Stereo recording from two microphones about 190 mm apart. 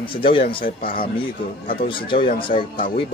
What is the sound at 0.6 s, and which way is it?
Speech, 50° left (ahead or behind).